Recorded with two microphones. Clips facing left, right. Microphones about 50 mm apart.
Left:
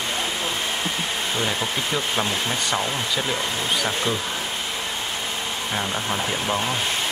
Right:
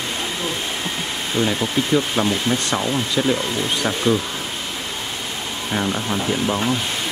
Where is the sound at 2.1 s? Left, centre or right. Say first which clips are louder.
Right 4 dB; right.